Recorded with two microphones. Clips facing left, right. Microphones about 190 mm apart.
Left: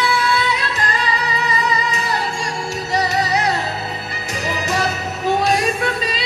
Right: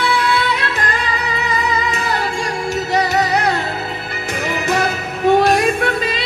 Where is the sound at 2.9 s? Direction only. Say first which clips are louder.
Right 2 dB; 55° right (ahead or behind).